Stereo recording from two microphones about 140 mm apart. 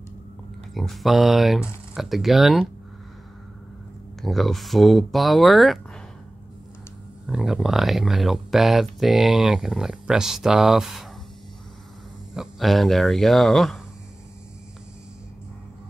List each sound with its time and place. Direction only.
0.7 s speech: centre (ahead or behind)
4.2 s speech: centre (ahead or behind)
7.2 s speech: 5° right (ahead or behind)
12.4 s speech: centre (ahead or behind)